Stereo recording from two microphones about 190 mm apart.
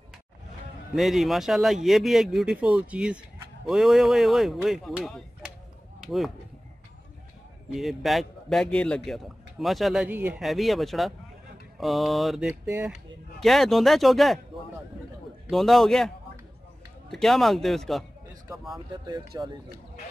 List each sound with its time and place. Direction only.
0.9 s a man's voice: centre (ahead or behind)
7.7 s a man's voice: centre (ahead or behind)
13.4 s a man's voice: centre (ahead or behind)
15.4 s a man's voice: centre (ahead or behind)
17.1 s a man's voice: centre (ahead or behind)
19.0 s speech: 20° right (ahead or behind)